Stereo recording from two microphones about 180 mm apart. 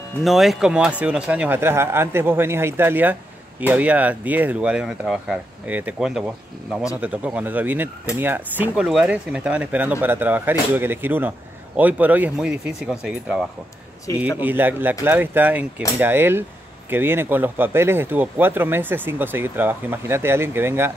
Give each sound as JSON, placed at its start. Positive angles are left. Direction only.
{"t": 0.2, "sound": "speech", "side_deg": 0}
{"t": 14.1, "sound": "a man's voice", "side_deg": 20}
{"t": 14.4, "sound": "speech", "side_deg": -10}